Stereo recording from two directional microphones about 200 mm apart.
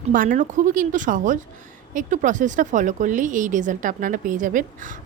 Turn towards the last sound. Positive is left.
turn(degrees=-40)  # may be behind; listen again after turning